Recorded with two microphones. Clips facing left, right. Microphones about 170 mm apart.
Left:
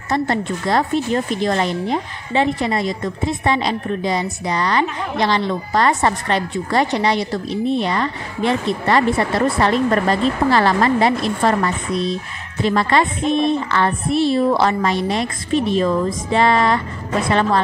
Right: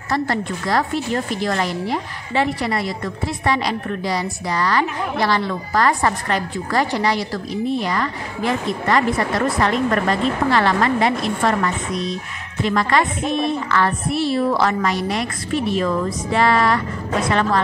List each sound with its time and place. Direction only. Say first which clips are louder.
0.1 s speech: left 2 dB; 25° left (ahead or behind)